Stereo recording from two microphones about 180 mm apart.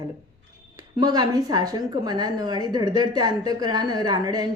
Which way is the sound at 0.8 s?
20° right (ahead or behind).